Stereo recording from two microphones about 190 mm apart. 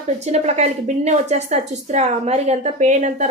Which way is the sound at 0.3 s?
35° right (ahead or behind).